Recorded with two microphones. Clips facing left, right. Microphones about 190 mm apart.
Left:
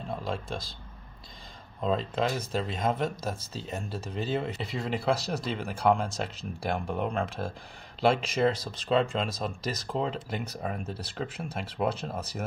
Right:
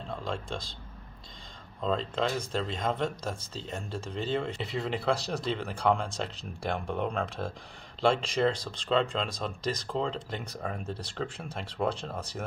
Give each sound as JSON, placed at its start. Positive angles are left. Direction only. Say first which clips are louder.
{"t": 0.1, "sound": "speech", "louder": "left 1 dB", "side_deg": 5}
{"t": 1.8, "sound": "speech", "louder": "left 1 dB", "side_deg": 5}